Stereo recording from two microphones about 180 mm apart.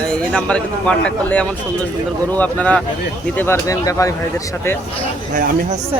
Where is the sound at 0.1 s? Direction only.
5° left (ahead or behind).